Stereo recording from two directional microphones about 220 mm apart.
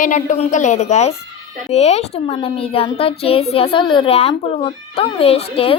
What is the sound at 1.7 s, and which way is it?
Child singing, 30° left (ahead or behind).